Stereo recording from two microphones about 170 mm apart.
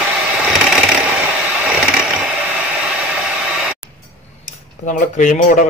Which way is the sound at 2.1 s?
5° right (ahead or behind).